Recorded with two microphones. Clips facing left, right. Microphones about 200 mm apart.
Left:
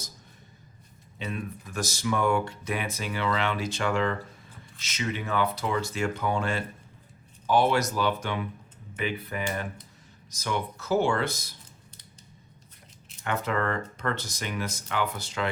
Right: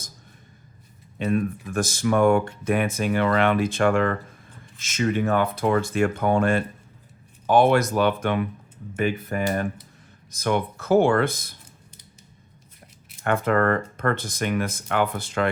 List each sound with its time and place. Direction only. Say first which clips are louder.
1.2 s speech: right 11 dB; 55° right (ahead or behind)
9.0 s speech: right 7 dB; 45° right (ahead or behind)
13.2 s speech: right 7 dB; 55° right (ahead or behind)